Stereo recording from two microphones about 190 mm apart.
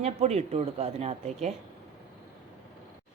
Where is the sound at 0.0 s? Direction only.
35° right (ahead or behind).